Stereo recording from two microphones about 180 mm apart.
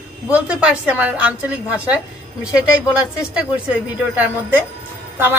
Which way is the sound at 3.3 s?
5° right (ahead or behind).